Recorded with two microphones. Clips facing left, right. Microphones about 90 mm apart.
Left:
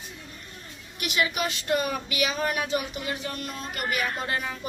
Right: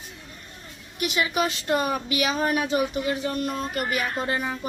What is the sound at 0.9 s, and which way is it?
A woman's voice, 30° right (ahead or behind).